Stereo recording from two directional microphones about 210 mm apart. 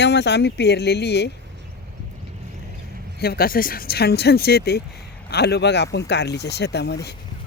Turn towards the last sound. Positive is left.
turn(degrees=55)  # may be behind; listen again after turning